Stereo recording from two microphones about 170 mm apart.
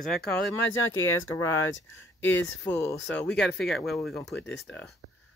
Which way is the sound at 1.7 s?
90° left.